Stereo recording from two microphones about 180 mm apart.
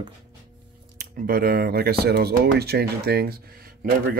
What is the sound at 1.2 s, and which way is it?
Speech, 55° right (ahead or behind).